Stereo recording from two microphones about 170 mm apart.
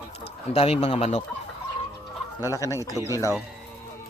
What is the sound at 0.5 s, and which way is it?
Speech, 35° left (ahead or behind).